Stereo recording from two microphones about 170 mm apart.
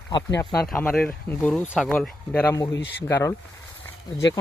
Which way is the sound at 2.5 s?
20° left (ahead or behind).